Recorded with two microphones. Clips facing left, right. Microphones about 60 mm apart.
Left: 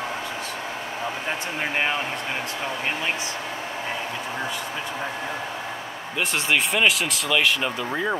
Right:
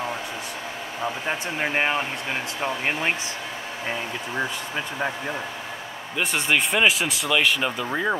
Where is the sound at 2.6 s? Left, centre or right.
Right.